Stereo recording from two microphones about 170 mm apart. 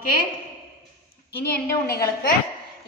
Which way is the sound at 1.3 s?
65° left (ahead or behind).